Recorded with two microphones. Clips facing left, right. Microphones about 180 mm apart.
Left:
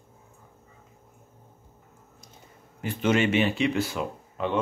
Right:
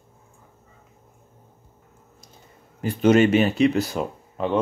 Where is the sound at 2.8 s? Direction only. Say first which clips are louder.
Right 7 dB; 40° right (ahead or behind).